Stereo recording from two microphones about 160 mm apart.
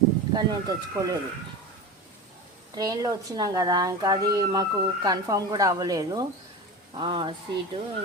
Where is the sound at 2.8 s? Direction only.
25° right (ahead or behind).